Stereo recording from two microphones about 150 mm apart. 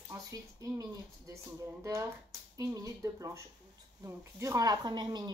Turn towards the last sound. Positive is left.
turn(degrees=-30)  # may be behind; listen again after turning